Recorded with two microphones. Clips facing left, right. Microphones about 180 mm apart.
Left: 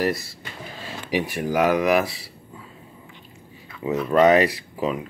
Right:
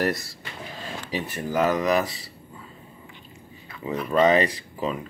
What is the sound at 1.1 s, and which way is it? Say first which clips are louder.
Speech: left 4 dB; 10° left (ahead or behind).